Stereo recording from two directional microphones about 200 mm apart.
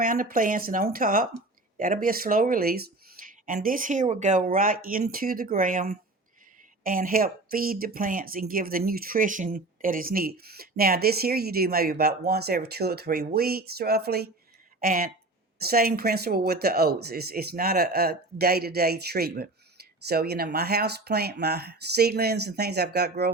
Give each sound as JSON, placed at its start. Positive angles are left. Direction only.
{"t": 0.0, "sound": "speech", "side_deg": -45}